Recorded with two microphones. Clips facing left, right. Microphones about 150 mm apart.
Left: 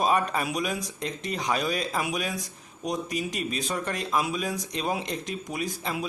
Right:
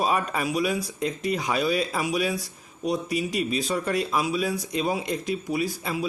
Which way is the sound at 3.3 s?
45° left (ahead or behind).